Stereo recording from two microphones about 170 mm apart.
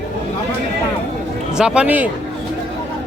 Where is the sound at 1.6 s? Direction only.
5° right (ahead or behind).